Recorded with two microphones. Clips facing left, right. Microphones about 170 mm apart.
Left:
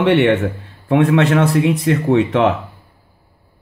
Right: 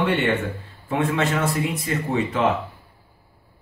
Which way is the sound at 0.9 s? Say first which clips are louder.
Left 9 dB; 65° left (ahead or behind).